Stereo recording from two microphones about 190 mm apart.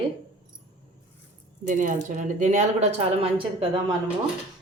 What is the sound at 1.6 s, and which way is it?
Speech, 45° right (ahead or behind).